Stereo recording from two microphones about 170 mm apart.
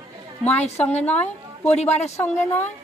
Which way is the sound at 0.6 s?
40° left (ahead or behind).